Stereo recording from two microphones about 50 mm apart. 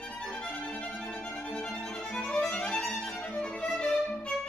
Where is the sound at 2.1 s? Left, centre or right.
Centre.